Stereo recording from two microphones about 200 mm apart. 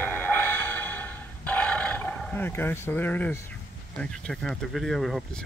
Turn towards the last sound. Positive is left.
turn(degrees=0)  # may be behind; listen again after turning